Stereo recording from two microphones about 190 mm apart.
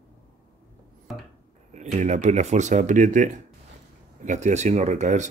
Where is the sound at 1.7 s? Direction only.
40° right (ahead or behind).